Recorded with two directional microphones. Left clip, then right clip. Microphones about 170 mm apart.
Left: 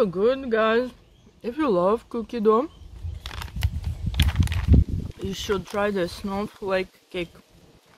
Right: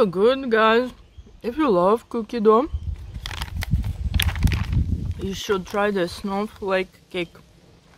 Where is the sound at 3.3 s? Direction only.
30° right (ahead or behind).